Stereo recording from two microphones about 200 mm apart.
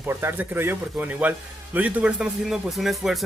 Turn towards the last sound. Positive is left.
turn(degrees=0)  # may be behind; listen again after turning